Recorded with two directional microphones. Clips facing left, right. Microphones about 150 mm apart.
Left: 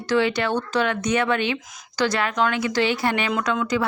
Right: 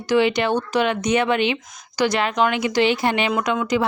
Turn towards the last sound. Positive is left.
turn(degrees=-20)  # may be behind; listen again after turning